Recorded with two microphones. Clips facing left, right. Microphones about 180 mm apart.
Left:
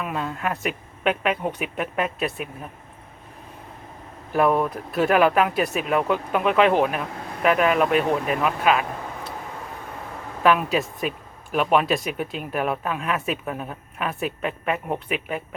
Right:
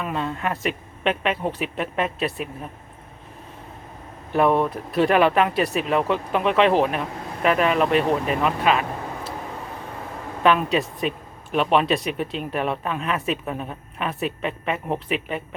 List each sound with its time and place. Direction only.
0.0 s speech: 5° left (ahead or behind)
4.3 s speech: 5° left (ahead or behind)
10.4 s speech: 5° left (ahead or behind)